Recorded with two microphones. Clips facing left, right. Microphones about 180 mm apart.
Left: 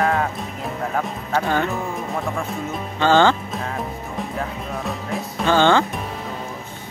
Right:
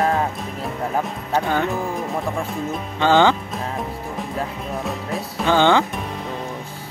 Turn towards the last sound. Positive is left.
turn(degrees=-15)  # may be behind; listen again after turning